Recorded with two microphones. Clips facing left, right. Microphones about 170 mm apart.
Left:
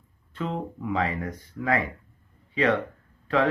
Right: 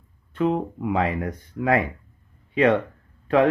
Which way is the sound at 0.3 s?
60° right (ahead or behind).